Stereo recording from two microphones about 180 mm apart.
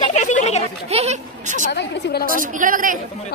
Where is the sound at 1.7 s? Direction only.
65° left (ahead or behind).